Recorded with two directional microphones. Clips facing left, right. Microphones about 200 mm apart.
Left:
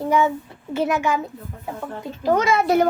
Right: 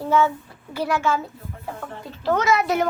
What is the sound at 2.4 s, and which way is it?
Speech, 30° left (ahead or behind).